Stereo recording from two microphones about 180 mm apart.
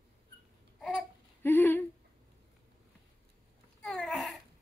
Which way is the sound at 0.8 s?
10° left (ahead or behind).